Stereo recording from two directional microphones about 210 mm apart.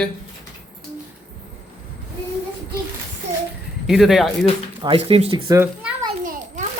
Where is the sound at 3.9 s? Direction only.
Centre (ahead or behind).